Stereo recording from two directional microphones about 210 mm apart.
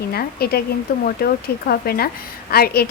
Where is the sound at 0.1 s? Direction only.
45° left (ahead or behind).